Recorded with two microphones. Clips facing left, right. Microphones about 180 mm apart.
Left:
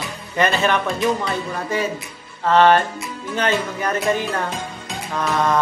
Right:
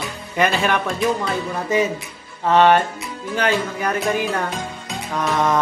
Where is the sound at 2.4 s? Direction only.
15° right (ahead or behind).